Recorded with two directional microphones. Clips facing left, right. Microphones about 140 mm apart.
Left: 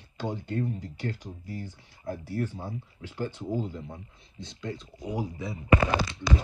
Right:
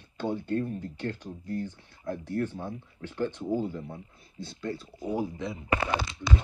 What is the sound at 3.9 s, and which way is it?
Speech, 20° left (ahead or behind).